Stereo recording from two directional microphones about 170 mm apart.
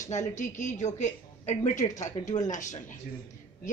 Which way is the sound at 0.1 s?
45° left (ahead or behind).